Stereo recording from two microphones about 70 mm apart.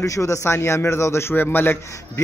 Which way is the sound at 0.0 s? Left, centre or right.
Left.